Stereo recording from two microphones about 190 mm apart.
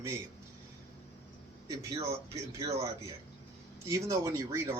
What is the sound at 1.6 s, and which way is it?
Speech, 20° right (ahead or behind).